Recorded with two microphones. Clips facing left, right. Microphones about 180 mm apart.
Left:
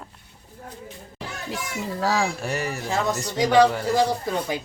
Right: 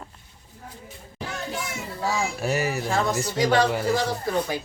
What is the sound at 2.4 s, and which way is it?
Speech, 5° right (ahead or behind).